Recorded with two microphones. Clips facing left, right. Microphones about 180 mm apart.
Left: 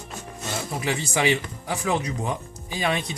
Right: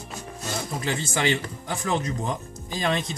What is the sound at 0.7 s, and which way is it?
Speech, 10° left (ahead or behind).